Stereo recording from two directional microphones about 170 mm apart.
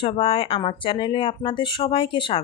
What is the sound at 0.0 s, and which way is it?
Speech, 35° left (ahead or behind).